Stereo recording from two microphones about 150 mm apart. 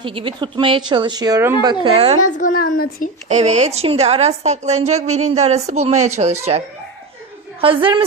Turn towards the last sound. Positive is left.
turn(degrees=-35)  # may be behind; listen again after turning